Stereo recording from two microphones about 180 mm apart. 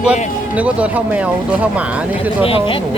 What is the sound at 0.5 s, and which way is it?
Speech, 10° right (ahead or behind).